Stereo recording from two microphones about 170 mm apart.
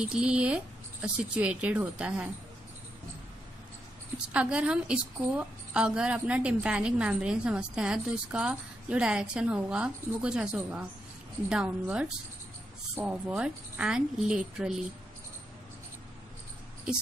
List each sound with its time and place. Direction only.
0.0 s a woman's voice: 5° right (ahead or behind)
4.3 s a woman's voice: 5° right (ahead or behind)